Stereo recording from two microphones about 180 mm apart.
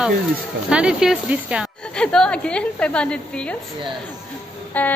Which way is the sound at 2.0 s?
5° left (ahead or behind).